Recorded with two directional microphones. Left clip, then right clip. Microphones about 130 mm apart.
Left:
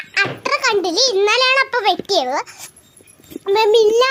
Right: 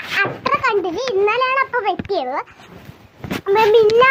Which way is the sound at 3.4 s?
40° left (ahead or behind).